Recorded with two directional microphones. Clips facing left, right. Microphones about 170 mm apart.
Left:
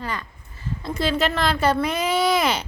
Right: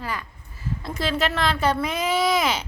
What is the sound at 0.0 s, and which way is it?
Speech, 5° right (ahead or behind).